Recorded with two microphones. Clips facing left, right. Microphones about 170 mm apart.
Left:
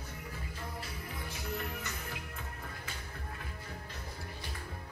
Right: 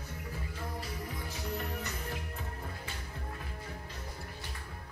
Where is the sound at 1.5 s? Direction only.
35° right (ahead or behind).